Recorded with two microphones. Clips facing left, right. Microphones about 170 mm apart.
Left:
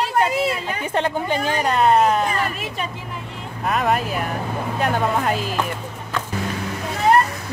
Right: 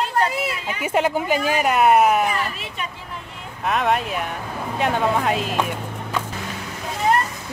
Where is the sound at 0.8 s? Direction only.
10° right (ahead or behind).